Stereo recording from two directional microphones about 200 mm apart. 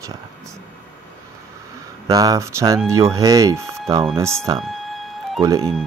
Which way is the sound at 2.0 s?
20° right (ahead or behind).